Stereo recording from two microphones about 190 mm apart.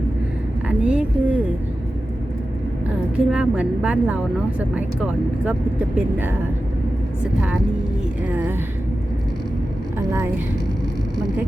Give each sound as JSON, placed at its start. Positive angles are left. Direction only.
{"t": 0.7, "sound": "vehicle", "side_deg": -5}
{"t": 3.2, "sound": "a woman's voice", "side_deg": -5}
{"t": 8.3, "sound": "a woman's voice", "side_deg": -10}
{"t": 10.1, "sound": "speech", "side_deg": -15}